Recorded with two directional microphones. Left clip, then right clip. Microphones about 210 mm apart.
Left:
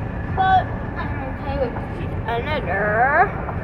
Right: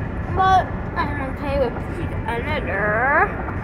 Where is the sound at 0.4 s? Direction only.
30° right (ahead or behind).